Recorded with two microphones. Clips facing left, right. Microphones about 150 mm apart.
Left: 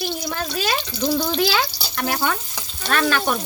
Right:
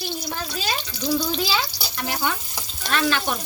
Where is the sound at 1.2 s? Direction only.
70° left (ahead or behind).